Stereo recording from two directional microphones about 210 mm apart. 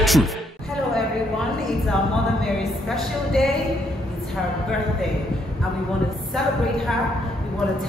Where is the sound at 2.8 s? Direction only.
Centre (ahead or behind).